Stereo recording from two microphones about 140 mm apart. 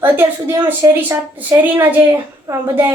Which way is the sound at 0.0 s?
15° right (ahead or behind).